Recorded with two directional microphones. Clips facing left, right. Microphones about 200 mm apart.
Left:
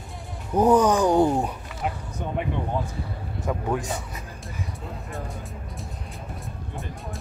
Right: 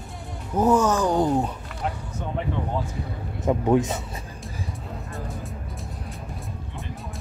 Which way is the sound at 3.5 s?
25° right (ahead or behind).